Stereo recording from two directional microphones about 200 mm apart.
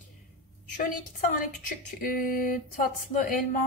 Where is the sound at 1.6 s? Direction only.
45° left (ahead or behind).